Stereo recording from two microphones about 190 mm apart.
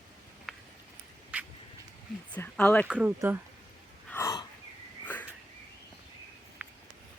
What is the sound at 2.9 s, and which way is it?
Speech, 10° right (ahead or behind).